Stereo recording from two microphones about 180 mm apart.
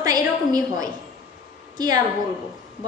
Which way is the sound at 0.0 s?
20° right (ahead or behind).